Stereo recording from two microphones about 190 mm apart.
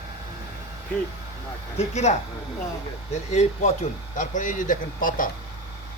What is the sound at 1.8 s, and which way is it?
Speech, 35° left (ahead or behind).